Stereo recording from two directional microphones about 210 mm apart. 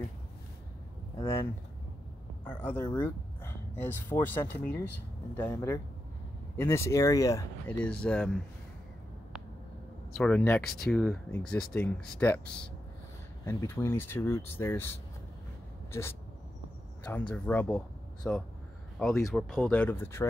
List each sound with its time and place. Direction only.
1.2 s speech: 10° left (ahead or behind)
10.1 s speech: 5° left (ahead or behind)
15.9 s speech: 10° left (ahead or behind)
17.3 s speech: 5° left (ahead or behind)